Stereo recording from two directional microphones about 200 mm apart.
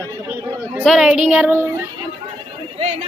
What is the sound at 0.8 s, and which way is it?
Speech, 5° right (ahead or behind).